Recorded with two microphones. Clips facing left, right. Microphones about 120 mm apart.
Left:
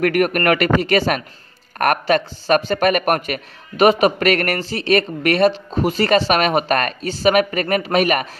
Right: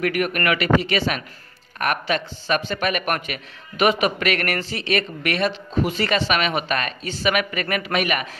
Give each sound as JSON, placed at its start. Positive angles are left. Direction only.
{"t": 0.0, "sound": "a man's voice", "side_deg": 50}